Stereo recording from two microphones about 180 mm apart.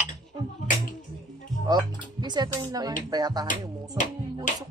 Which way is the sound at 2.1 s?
25° right (ahead or behind).